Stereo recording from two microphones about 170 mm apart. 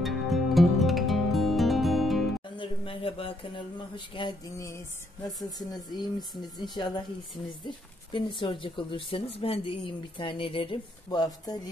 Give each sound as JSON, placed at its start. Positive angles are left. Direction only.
{"t": 0.0, "sound": "music", "side_deg": 0}
{"t": 2.5, "sound": "speech", "side_deg": 30}